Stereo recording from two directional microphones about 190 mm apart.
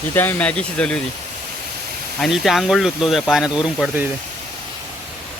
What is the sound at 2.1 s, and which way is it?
Speech, centre (ahead or behind).